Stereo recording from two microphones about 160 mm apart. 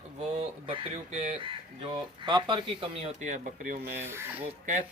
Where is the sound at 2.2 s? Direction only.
30° right (ahead or behind); by 3.9 s 55° right (ahead or behind).